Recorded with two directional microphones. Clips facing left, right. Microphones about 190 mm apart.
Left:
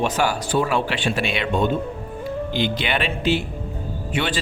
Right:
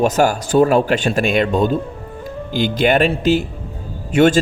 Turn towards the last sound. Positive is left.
turn(degrees=-45)  # may be behind; listen again after turning